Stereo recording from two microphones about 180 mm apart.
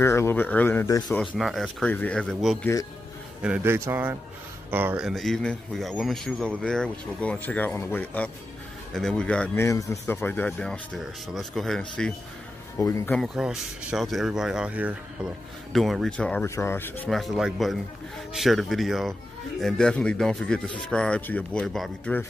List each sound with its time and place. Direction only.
0.0 s speech: 15° left (ahead or behind)
1.1 s speech: centre (ahead or behind)
2.6 s a man's voice: 20° left (ahead or behind)
3.4 s speech: 10° right (ahead or behind); by 9.7 s 5° left (ahead or behind)
9.7 s speech: 15° left (ahead or behind)
12.7 s speech: 15° left (ahead or behind)
13.1 s speech: centre (ahead or behind)